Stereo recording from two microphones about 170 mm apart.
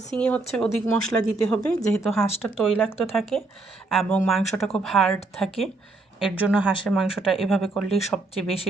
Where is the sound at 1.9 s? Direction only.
Centre (ahead or behind).